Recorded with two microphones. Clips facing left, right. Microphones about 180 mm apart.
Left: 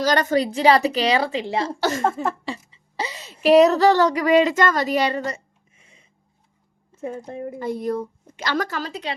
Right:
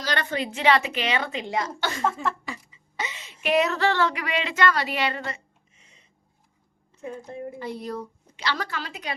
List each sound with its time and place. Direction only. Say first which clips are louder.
0.0 s speech: left 9 dB; 40° left (ahead or behind)
1.9 s a woman's voice: left 3 dB; 45° left (ahead or behind)
2.4 s a sound: left 6 dB; 30° left (ahead or behind)
3.4 s speech: left 9 dB; 35° left (ahead or behind)
6.9 s a woman's voice: left 5 dB; 50° left (ahead or behind); by 9.1 s 30° left (ahead or behind)